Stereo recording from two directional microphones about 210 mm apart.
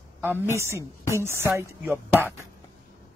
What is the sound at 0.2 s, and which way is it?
A man's voice, 10° right (ahead or behind).